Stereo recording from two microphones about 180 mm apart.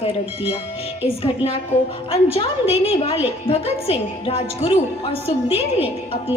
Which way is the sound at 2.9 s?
30° left (ahead or behind).